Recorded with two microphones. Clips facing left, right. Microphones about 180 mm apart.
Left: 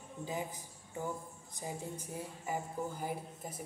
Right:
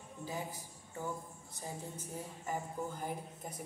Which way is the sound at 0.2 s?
20° left (ahead or behind).